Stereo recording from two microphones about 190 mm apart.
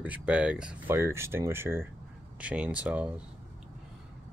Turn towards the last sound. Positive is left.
turn(degrees=-5)  # may be behind; listen again after turning